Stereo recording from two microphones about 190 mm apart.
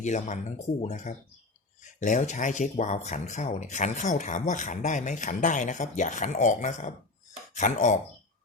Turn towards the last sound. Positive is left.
turn(degrees=40)  # may be behind; listen again after turning